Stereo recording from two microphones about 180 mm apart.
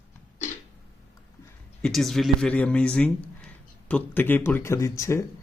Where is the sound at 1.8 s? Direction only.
Centre (ahead or behind).